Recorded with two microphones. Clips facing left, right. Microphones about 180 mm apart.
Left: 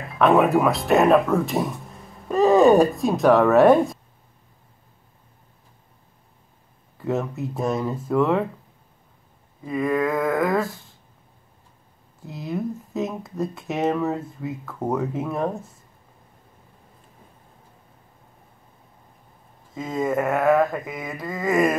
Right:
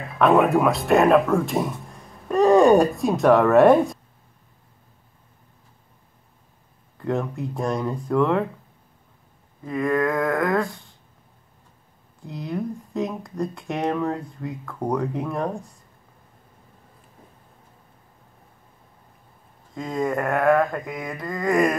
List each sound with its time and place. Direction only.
0.0 s speech: centre (ahead or behind)
7.0 s speech: 5° left (ahead or behind)
9.7 s speech: 5° left (ahead or behind)
12.2 s speech: 5° left (ahead or behind)
19.7 s speech: 5° left (ahead or behind)